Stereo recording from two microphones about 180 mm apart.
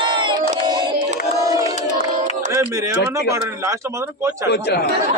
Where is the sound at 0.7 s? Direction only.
25° right (ahead or behind).